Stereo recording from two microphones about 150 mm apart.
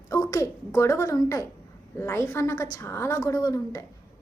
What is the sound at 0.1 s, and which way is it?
A woman's voice, 20° left (ahead or behind).